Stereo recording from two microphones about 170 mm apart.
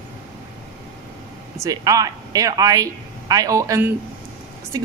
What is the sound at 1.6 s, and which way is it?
Speech, 20° right (ahead or behind).